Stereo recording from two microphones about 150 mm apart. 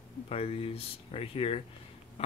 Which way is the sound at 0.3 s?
40° left (ahead or behind).